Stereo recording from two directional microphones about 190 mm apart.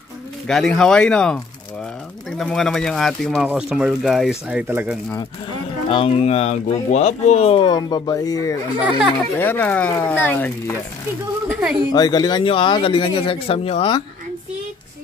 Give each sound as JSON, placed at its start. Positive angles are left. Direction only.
{"t": 0.5, "sound": "speech", "side_deg": 0}
{"t": 5.9, "sound": "speech", "side_deg": 30}
{"t": 8.7, "sound": "speech", "side_deg": -10}
{"t": 9.4, "sound": "speech", "side_deg": 10}
{"t": 11.9, "sound": "speech", "side_deg": 20}